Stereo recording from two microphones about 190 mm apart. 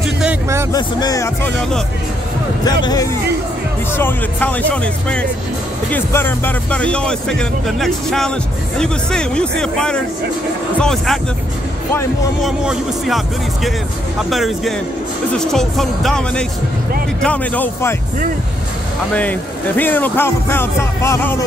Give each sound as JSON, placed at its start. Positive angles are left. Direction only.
{"t": 0.0, "sound": "music", "side_deg": -5}
{"t": 0.7, "sound": "speech", "side_deg": 20}
{"t": 2.6, "sound": "speech", "side_deg": 20}
{"t": 12.4, "sound": "speech", "side_deg": 0}
{"t": 14.3, "sound": "speech", "side_deg": 0}
{"t": 19.1, "sound": "speech", "side_deg": 10}